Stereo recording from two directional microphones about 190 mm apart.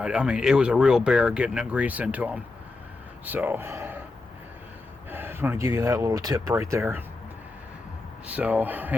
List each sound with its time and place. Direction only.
0.0 s speech: 5° right (ahead or behind)
5.1 s speech: 10° right (ahead or behind)
8.3 s speech: 5° right (ahead or behind)